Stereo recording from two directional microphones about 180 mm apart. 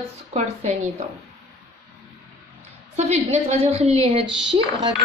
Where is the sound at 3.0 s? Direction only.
35° right (ahead or behind).